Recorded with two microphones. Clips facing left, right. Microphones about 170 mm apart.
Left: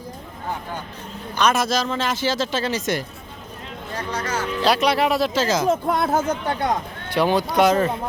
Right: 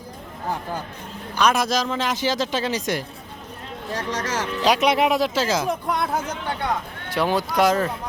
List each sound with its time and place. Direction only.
1.4 s speech: 10° right (ahead or behind)
3.9 s speech: 90° right
4.6 s speech: 15° right (ahead or behind)
5.6 s speech: 25° left (ahead or behind)
6.1 s speech: 45° left (ahead or behind)
7.1 s speech: centre (ahead or behind)